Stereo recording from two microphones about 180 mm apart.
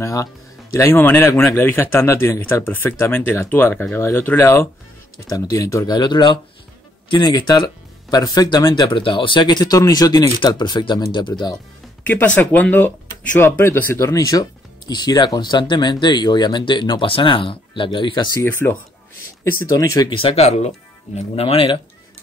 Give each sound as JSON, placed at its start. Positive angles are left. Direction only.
{"t": 0.0, "sound": "speech", "side_deg": 20}
{"t": 12.1, "sound": "speech", "side_deg": 10}
{"t": 18.4, "sound": "speech", "side_deg": 10}